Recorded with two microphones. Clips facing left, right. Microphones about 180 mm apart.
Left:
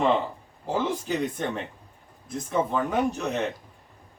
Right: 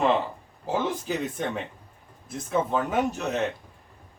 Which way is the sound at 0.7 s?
5° right (ahead or behind).